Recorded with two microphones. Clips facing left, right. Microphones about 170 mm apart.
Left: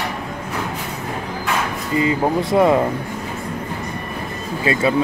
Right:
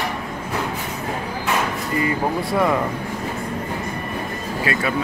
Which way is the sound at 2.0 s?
20° left (ahead or behind).